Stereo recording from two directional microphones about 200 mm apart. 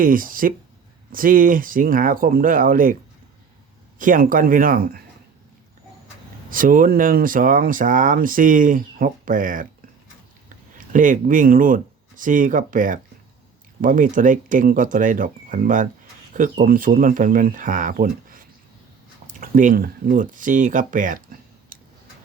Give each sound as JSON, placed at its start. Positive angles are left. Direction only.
{"t": 0.0, "sound": "speech", "side_deg": -45}
{"t": 6.5, "sound": "speech", "side_deg": -45}